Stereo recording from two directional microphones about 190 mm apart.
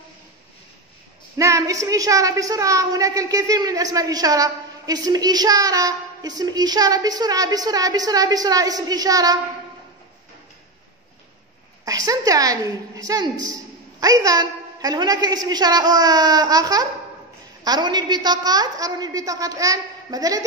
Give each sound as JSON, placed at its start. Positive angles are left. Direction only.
{"t": 1.4, "sound": "a woman's voice", "side_deg": -15}
{"t": 11.8, "sound": "a woman's voice", "side_deg": -15}